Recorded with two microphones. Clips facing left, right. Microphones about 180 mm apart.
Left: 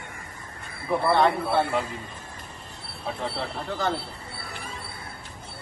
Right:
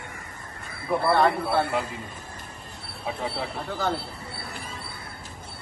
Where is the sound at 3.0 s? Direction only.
5° right (ahead or behind).